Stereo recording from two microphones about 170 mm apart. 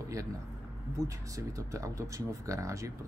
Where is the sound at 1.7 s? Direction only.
20° right (ahead or behind).